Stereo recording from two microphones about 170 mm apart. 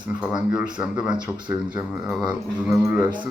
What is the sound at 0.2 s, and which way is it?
Speech, 5° right (ahead or behind).